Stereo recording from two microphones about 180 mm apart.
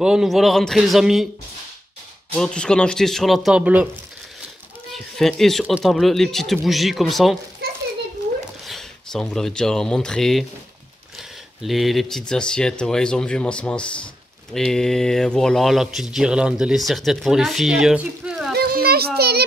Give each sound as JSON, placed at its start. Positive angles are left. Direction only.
{"t": 0.0, "sound": "speech", "side_deg": -5}
{"t": 2.3, "sound": "speech", "side_deg": 5}
{"t": 4.9, "sound": "speech", "side_deg": 0}
{"t": 8.6, "sound": "speech", "side_deg": 0}
{"t": 11.6, "sound": "speech", "side_deg": 0}
{"t": 18.5, "sound": "children playing", "side_deg": -60}